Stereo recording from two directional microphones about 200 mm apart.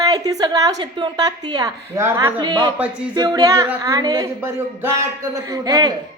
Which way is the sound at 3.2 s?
20° right (ahead or behind).